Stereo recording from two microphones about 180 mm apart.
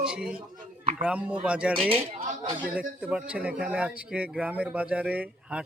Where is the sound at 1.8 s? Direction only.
30° right (ahead or behind).